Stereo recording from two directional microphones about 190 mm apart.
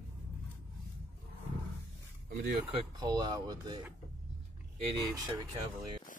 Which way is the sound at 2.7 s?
20° right (ahead or behind).